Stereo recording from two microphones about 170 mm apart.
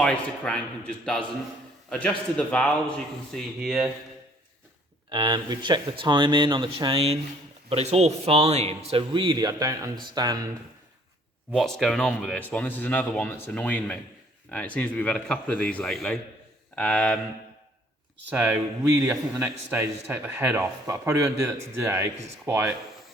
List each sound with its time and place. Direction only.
0.0 s a man's voice: 5° left (ahead or behind)
5.0 s a man's voice: 25° right (ahead or behind)
11.5 s a man's voice: centre (ahead or behind)
18.3 s speech: 10° right (ahead or behind)